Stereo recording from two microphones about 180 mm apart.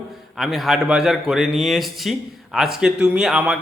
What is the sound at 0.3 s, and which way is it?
A man's voice, centre (ahead or behind).